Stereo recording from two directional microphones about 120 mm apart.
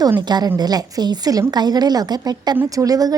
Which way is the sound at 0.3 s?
35° right (ahead or behind).